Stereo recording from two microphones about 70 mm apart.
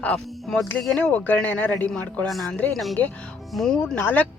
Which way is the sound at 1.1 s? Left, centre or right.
Left.